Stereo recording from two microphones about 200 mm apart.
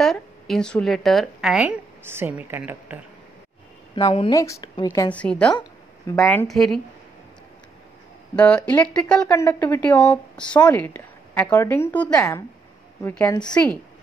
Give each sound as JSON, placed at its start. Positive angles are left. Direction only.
{"t": 0.0, "sound": "a woman's voice", "side_deg": 0}
{"t": 3.9, "sound": "speech", "side_deg": 25}
{"t": 8.7, "sound": "speech", "side_deg": 5}
{"t": 13.3, "sound": "speech", "side_deg": 20}